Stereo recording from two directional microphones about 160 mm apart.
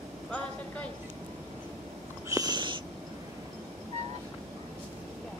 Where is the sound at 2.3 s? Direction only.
25° right (ahead or behind).